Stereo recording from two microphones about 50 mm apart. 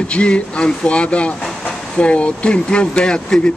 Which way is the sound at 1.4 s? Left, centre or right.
Centre.